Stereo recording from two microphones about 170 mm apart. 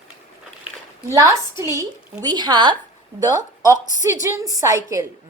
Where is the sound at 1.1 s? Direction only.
15° right (ahead or behind).